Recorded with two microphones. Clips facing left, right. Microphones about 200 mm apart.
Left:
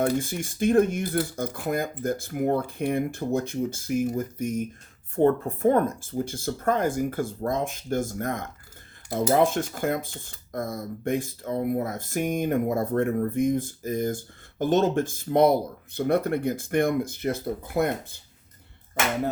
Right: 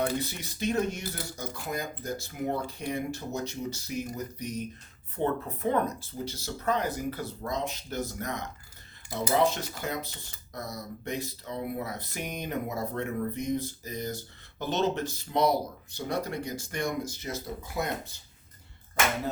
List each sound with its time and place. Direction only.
0.0 s speech: 50° left (ahead or behind)